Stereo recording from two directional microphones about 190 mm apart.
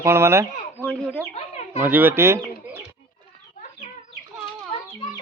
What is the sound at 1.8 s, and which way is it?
Speech, 10° right (ahead or behind).